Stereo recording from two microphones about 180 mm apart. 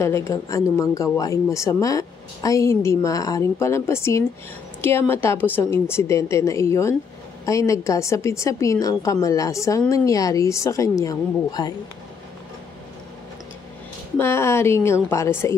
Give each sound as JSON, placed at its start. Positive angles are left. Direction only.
{"t": 0.0, "sound": "a woman's voice", "side_deg": 15}
{"t": 14.1, "sound": "a woman's voice", "side_deg": 15}